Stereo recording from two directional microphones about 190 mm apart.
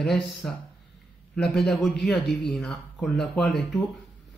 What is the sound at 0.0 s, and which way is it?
A man's voice, centre (ahead or behind).